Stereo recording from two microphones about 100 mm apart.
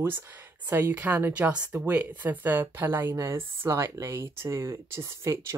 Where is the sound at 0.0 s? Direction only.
20° right (ahead or behind).